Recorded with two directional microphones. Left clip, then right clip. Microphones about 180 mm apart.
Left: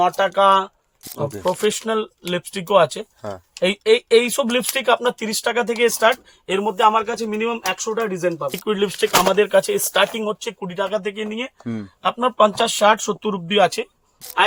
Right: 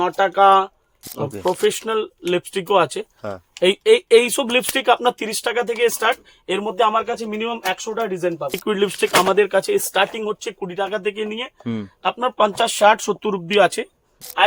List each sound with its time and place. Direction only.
0.0 s speech: 30° right (ahead or behind)
1.3 s speech: centre (ahead or behind)
1.7 s speech: 35° right (ahead or behind)
3.2 s a sound: 15° right (ahead or behind)
3.6 s speech: 45° right (ahead or behind); by 8.4 s 10° right (ahead or behind)
8.6 s speech: 35° right (ahead or behind); by 11.9 s 15° right (ahead or behind)
12.0 s speech: 30° right (ahead or behind)